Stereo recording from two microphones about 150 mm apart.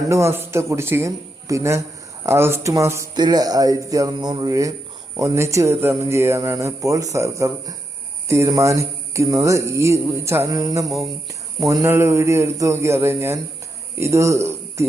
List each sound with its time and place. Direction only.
0.1 s a man's voice: 20° right (ahead or behind)
10.8 s cricket: centre (ahead or behind)
11.6 s a man's voice: 20° right (ahead or behind)